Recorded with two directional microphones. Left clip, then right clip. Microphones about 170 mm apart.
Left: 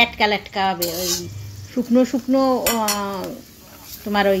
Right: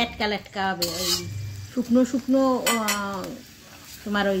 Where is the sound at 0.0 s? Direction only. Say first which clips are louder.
Left 8 dB; 10° left (ahead or behind).